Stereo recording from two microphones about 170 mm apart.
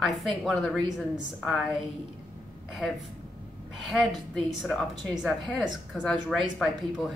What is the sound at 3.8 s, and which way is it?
A woman's voice, centre (ahead or behind).